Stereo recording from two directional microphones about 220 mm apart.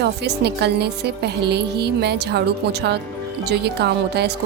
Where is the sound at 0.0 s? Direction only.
50° right (ahead or behind).